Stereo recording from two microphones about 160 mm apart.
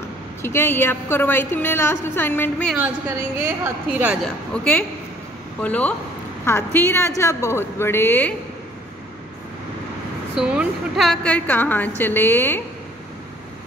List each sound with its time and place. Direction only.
0.4 s a woman's voice: 15° left (ahead or behind)
3.3 s a woman's voice: 10° right (ahead or behind)
4.2 s a woman's voice: 10° left (ahead or behind)
10.3 s a woman's voice: 5° right (ahead or behind); by 12.6 s 15° left (ahead or behind)